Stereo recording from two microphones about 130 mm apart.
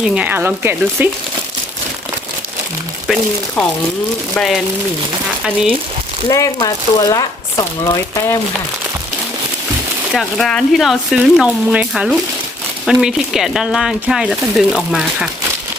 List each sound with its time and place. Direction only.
0.0 s speech: 10° right (ahead or behind)
4.4 s speech: centre (ahead or behind)
6.2 s speech: 25° left (ahead or behind)
10.1 s speech: centre (ahead or behind)